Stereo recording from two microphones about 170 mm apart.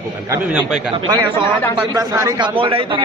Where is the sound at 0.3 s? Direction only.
5° right (ahead or behind).